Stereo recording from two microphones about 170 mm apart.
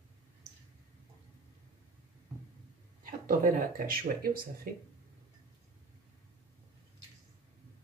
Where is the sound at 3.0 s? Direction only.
55° right (ahead or behind).